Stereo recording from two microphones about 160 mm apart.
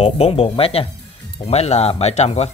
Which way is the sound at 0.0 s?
40° left (ahead or behind).